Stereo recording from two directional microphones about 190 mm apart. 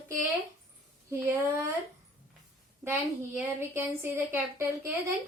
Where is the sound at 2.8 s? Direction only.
10° right (ahead or behind).